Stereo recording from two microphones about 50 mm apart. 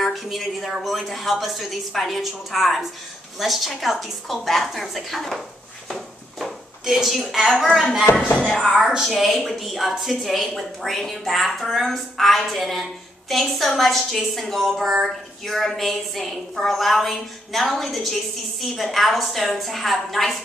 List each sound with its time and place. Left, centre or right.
0.0 s a woman's voice: centre
5.9 s a sound: centre
6.8 s a woman's voice: centre
9.0 s a woman's voice: centre